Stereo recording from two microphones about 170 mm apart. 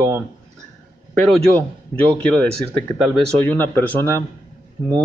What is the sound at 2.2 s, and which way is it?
Speech, 5° left (ahead or behind).